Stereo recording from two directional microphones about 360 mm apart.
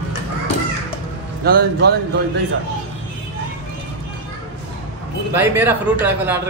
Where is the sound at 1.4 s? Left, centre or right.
Right.